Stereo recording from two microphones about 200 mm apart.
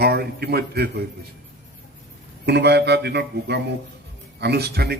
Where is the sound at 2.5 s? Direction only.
55° right (ahead or behind).